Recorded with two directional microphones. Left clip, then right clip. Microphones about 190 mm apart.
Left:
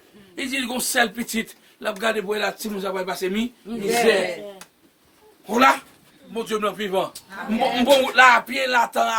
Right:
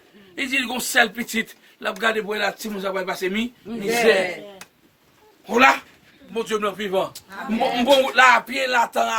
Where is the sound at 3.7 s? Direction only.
20° right (ahead or behind).